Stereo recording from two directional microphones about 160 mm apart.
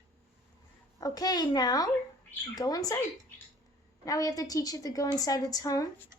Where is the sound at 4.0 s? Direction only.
20° left (ahead or behind).